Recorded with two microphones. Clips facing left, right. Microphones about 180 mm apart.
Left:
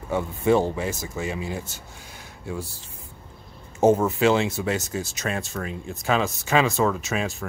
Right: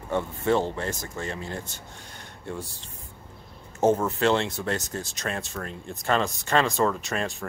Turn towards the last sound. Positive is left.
turn(degrees=0)  # may be behind; listen again after turning